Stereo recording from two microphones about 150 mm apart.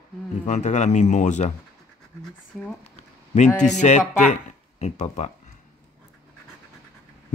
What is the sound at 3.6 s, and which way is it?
Speech, 50° left (ahead or behind).